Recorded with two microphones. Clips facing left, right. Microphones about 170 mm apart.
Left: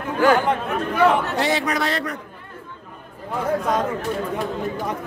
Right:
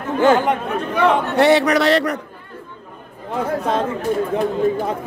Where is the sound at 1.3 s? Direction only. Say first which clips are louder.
Right 8 dB; 65° right (ahead or behind).